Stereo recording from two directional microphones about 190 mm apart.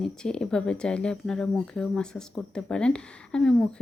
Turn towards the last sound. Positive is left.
turn(degrees=5)  # may be behind; listen again after turning